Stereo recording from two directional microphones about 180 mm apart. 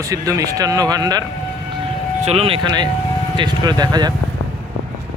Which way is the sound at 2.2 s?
35° right (ahead or behind).